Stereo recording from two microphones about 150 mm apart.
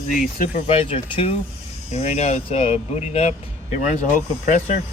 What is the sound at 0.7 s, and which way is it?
Speech, 40° left (ahead or behind).